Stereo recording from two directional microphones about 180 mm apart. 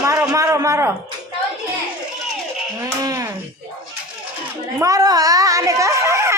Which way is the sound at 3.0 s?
20° right (ahead or behind).